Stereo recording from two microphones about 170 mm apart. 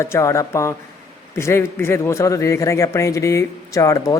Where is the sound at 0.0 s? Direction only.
15° left (ahead or behind).